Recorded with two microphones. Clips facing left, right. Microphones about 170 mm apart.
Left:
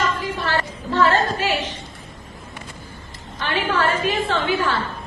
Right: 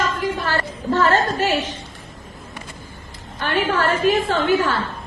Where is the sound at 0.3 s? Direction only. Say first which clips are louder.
Even; 45° right (ahead or behind).